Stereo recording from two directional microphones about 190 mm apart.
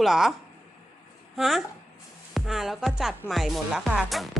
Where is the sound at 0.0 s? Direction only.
Centre (ahead or behind).